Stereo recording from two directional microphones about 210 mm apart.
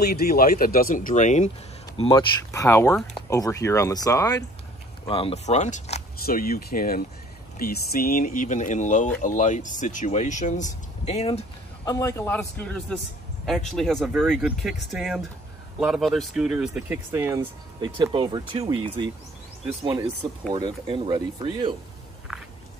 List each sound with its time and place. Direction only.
0.0 s speech: 50° left (ahead or behind)
2.0 s speech: 20° left (ahead or behind)
5.0 s speech: 25° left (ahead or behind)
6.2 s speech: 45° left (ahead or behind); by 17.5 s 10° right (ahead or behind)
17.7 s speech: 20° right (ahead or behind)
22.3 s a sound: centre (ahead or behind)